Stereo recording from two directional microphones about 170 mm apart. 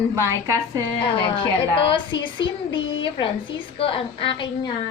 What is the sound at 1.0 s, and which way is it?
A woman's voice, 30° left (ahead or behind).